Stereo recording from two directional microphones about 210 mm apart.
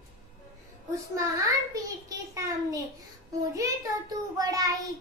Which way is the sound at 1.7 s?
15° right (ahead or behind).